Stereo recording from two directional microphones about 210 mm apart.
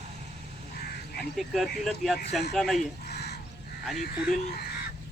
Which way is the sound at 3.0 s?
50° left (ahead or behind).